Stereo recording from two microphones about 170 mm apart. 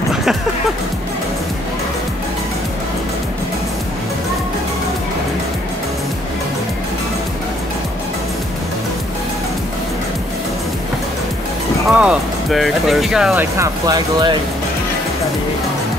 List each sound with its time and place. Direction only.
11.9 s speech: 5° right (ahead or behind)
13.6 s speech: 20° right (ahead or behind)